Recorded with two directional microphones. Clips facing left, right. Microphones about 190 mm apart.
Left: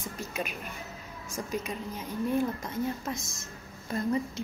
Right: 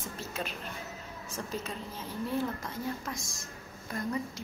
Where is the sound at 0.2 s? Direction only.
15° left (ahead or behind).